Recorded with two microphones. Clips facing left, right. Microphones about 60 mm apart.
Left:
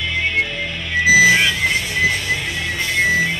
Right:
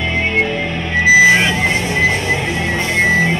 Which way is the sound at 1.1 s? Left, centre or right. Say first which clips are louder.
Right 3 dB; right.